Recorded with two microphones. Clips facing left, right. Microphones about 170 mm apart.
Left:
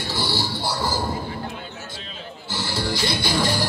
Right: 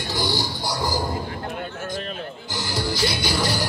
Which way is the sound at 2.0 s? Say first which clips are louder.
Right 8 dB; 55° right (ahead or behind).